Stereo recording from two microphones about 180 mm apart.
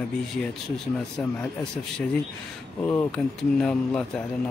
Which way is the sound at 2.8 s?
10° left (ahead or behind).